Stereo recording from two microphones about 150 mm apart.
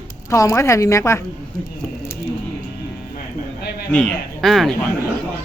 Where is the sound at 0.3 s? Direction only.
20° left (ahead or behind).